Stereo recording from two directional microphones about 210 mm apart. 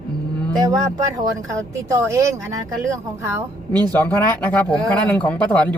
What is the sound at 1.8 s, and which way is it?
Speech, 15° right (ahead or behind).